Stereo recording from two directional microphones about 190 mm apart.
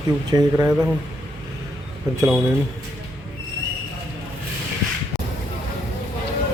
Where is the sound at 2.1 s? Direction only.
10° right (ahead or behind).